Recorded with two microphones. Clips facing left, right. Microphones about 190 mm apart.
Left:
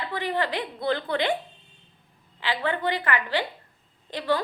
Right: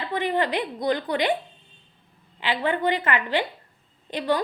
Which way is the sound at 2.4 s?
20° right (ahead or behind).